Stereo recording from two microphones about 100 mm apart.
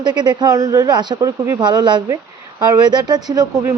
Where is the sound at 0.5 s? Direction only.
35° right (ahead or behind).